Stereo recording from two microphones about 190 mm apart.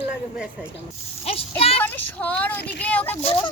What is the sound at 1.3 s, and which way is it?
Speech, 30° left (ahead or behind).